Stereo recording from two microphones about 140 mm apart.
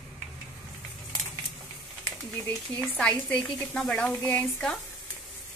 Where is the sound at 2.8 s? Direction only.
10° left (ahead or behind).